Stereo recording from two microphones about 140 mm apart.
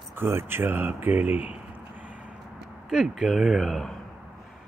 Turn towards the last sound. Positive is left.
turn(degrees=0)  # may be behind; listen again after turning